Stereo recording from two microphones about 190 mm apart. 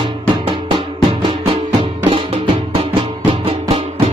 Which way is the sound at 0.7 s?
25° right (ahead or behind).